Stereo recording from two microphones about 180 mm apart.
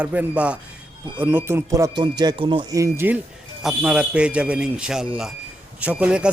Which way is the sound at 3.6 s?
5° right (ahead or behind).